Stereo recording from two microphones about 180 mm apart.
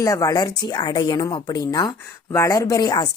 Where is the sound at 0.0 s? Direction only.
20° left (ahead or behind).